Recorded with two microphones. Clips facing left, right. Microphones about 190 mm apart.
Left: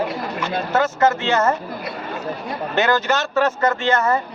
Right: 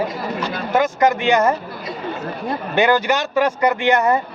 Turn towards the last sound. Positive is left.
turn(degrees=-15)  # may be behind; listen again after turning